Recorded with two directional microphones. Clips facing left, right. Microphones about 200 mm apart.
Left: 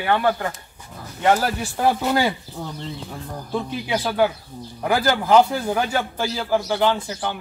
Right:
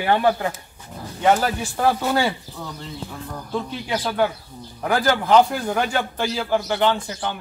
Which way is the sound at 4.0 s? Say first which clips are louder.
Left 1 dB; 10° left (ahead or behind).